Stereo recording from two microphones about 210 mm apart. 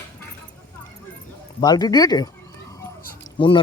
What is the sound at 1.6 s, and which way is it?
Speech, 20° left (ahead or behind).